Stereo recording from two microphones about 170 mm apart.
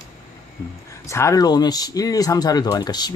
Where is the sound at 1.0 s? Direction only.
15° left (ahead or behind).